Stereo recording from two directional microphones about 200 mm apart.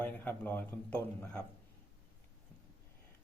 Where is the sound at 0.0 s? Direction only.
10° left (ahead or behind).